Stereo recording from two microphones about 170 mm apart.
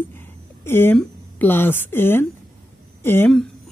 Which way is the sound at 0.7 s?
15° left (ahead or behind).